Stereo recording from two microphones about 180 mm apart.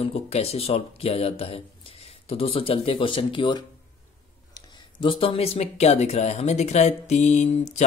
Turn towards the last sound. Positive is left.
turn(degrees=40)  # may be behind; listen again after turning